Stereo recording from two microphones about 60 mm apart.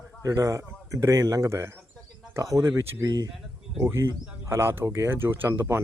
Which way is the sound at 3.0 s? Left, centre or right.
Right.